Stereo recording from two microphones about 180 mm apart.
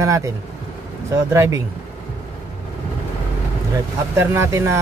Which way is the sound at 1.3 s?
15° right (ahead or behind).